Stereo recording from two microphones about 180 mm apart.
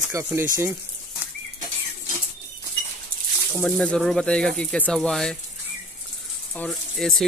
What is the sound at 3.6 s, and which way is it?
Speech, 5° left (ahead or behind).